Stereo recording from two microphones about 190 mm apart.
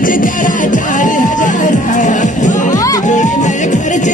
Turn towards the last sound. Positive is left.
turn(degrees=40)  # may be behind; listen again after turning